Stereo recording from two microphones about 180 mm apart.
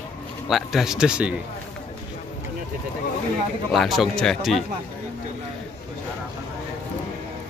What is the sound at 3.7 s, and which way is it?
Speech, centre (ahead or behind).